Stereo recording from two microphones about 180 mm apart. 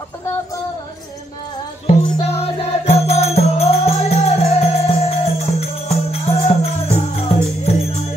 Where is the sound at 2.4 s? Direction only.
35° left (ahead or behind).